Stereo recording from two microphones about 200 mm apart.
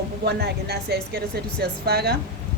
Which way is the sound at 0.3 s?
55° right (ahead or behind).